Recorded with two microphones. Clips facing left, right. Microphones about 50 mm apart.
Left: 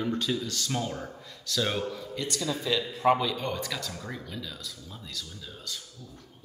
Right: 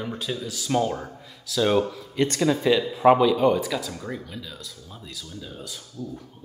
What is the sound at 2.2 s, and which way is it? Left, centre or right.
Speech, right.